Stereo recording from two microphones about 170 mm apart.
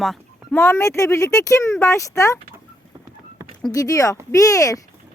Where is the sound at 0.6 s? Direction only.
15° left (ahead or behind).